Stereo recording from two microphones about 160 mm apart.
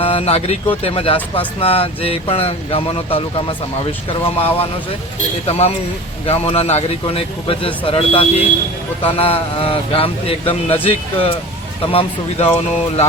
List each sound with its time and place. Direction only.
0.0 s speech: 40° left (ahead or behind)